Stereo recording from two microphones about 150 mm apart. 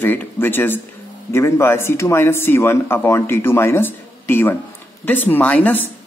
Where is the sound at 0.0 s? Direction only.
15° left (ahead or behind).